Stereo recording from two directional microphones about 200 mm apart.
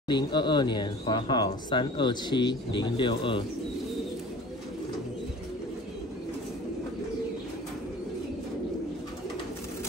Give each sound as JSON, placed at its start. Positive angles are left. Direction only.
{"t": 0.1, "sound": "speech", "side_deg": 20}